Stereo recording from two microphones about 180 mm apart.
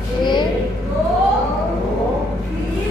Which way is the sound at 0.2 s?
25° left (ahead or behind).